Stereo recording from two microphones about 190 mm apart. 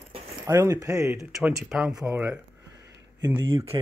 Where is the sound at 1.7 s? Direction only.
5° right (ahead or behind).